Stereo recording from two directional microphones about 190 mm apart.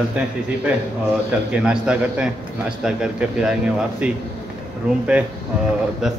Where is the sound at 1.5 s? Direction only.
5° right (ahead or behind).